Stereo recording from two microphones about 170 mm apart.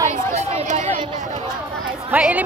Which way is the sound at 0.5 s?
40° right (ahead or behind).